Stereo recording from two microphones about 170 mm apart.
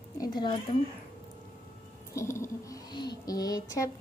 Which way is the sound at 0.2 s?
25° left (ahead or behind).